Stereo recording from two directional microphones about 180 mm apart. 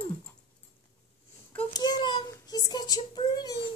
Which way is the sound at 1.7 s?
25° left (ahead or behind).